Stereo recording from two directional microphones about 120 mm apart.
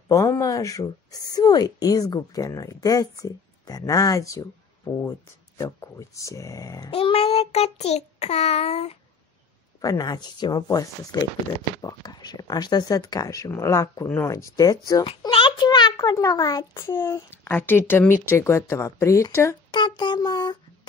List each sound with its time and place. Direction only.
0.1 s a woman's voice: 25° left (ahead or behind)
6.9 s child singing: 50° left (ahead or behind)
9.8 s a woman's voice: 35° left (ahead or behind)
15.0 s a sound: 45° left (ahead or behind)
17.0 s a woman's voice: 20° left (ahead or behind)
19.7 s speech: 40° left (ahead or behind)